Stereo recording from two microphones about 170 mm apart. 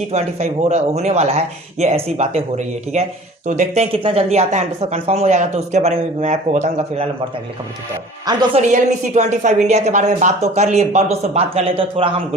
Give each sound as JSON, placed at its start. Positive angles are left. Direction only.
{"t": 0.1, "sound": "speech", "side_deg": -40}
{"t": 8.3, "sound": "a woman's voice", "side_deg": -25}
{"t": 8.7, "sound": "speech", "side_deg": -45}